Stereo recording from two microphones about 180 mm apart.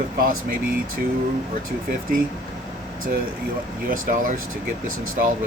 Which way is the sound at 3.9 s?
50° right (ahead or behind).